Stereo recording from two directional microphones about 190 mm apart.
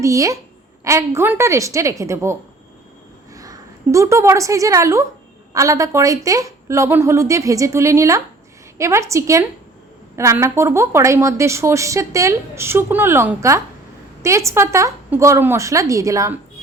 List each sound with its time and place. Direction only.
0.0 s a woman's voice: 15° right (ahead or behind)